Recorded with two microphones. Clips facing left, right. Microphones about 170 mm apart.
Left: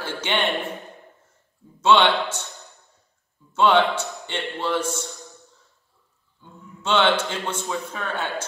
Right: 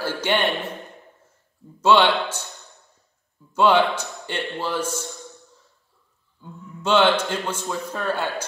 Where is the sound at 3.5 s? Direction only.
10° right (ahead or behind).